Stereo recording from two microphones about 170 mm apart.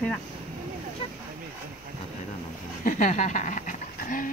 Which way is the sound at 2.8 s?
45° left (ahead or behind).